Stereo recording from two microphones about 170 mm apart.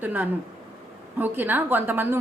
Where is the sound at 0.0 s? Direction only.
10° right (ahead or behind).